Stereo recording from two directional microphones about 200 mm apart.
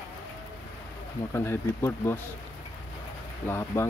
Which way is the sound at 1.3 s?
10° left (ahead or behind).